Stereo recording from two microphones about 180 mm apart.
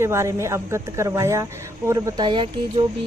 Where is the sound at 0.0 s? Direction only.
15° right (ahead or behind).